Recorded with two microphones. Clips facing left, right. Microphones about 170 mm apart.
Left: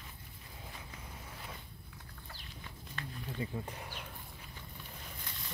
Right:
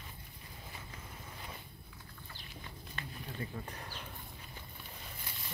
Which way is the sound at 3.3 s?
15° left (ahead or behind).